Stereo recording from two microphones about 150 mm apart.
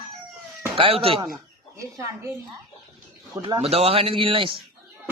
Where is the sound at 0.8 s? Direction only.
40° right (ahead or behind).